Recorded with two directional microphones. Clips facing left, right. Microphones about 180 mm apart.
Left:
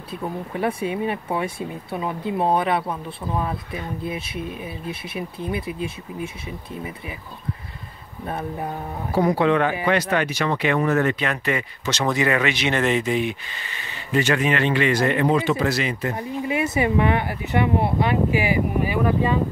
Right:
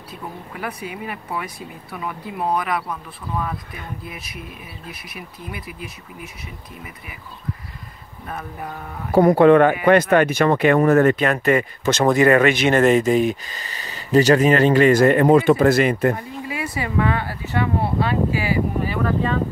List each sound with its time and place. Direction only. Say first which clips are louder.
0.1 s speech: left 6 dB; 30° left (ahead or behind)
8.3 s speech: left 4 dB; 30° left (ahead or behind)
9.1 s speech: right 7 dB; 50° right (ahead or behind)
16.4 s speech: left 6 dB; 25° left (ahead or behind)